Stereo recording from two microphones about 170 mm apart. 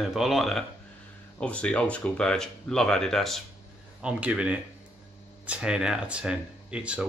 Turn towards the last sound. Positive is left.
turn(degrees=-5)  # may be behind; listen again after turning